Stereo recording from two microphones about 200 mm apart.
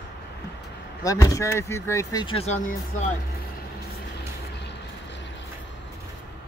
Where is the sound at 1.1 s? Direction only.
15° left (ahead or behind).